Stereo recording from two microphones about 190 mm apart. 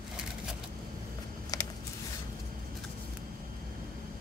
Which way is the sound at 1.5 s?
20° left (ahead or behind).